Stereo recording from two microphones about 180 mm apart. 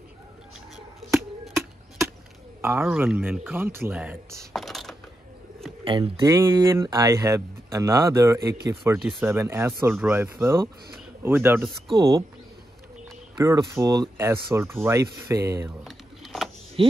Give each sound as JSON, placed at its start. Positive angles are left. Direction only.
{"t": 1.0, "sound": "a sound", "side_deg": 0}
{"t": 2.6, "sound": "speech", "side_deg": -10}
{"t": 4.5, "sound": "computer keyboard", "side_deg": 0}
{"t": 5.9, "sound": "speech", "side_deg": -30}
{"t": 13.4, "sound": "speech", "side_deg": -15}
{"t": 15.8, "sound": "a sound", "side_deg": 0}